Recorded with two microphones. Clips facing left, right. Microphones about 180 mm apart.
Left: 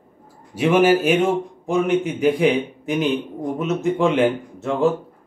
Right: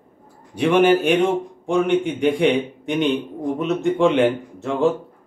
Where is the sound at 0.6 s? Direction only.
5° left (ahead or behind).